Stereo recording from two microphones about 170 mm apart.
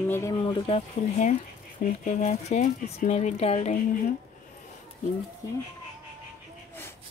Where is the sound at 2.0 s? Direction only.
40° left (ahead or behind).